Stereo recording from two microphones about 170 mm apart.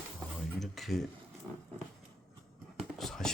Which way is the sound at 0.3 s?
Centre (ahead or behind).